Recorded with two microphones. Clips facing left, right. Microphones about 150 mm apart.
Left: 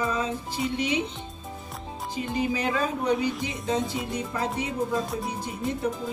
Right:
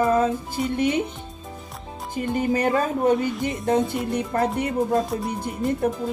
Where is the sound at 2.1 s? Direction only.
50° right (ahead or behind).